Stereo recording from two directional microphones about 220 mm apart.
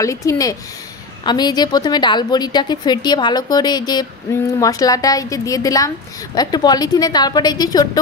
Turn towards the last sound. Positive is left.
turn(degrees=15)  # may be behind; listen again after turning